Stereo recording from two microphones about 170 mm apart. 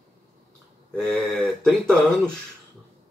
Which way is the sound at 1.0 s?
5° left (ahead or behind).